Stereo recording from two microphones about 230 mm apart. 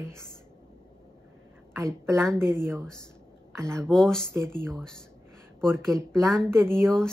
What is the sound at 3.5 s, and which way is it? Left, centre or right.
Speech, centre.